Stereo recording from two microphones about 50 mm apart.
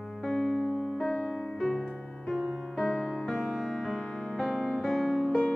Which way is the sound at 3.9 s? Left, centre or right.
Centre.